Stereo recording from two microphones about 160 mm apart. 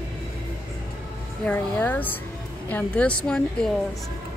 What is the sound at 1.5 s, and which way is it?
Speech, 10° left (ahead or behind).